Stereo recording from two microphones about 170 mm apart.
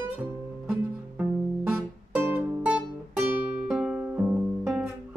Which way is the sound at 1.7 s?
10° right (ahead or behind).